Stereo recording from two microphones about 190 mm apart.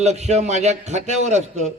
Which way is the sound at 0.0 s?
35° right (ahead or behind).